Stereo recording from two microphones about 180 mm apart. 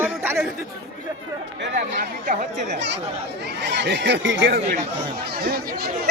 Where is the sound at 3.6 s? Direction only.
75° right (ahead or behind); by 4.6 s 90° right.